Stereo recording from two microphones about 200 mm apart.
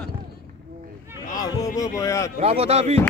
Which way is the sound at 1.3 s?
20° left (ahead or behind).